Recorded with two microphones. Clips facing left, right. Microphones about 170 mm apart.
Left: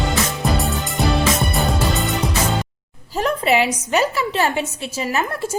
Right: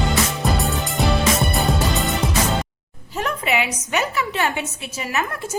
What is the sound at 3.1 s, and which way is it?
A woman's voice, 35° left (ahead or behind).